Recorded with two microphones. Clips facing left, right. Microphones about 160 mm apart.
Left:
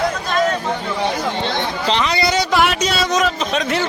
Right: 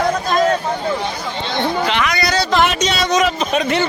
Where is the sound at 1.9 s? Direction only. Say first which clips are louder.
Left 1 dB; 30° left (ahead or behind).